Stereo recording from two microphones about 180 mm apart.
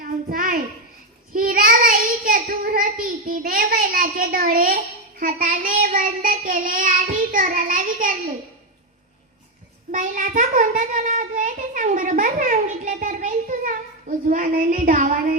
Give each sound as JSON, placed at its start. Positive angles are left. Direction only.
{"t": 0.0, "sound": "a child's voice", "side_deg": -50}
{"t": 9.9, "sound": "a child's voice", "side_deg": -45}